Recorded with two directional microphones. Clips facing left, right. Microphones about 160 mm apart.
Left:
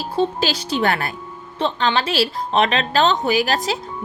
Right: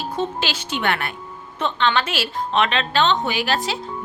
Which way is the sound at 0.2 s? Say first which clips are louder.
Left 7 dB; 35° left (ahead or behind).